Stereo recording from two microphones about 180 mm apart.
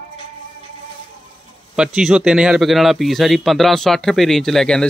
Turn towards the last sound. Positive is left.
turn(degrees=5)  # may be behind; listen again after turning